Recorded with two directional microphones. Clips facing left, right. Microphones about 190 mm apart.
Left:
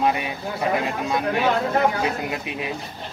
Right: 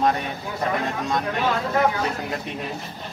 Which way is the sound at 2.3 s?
5° left (ahead or behind).